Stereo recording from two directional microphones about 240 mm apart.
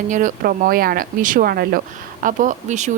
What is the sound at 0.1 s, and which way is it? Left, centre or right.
A woman's voice, right.